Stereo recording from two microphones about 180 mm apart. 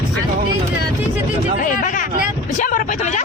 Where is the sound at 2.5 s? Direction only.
45° left (ahead or behind).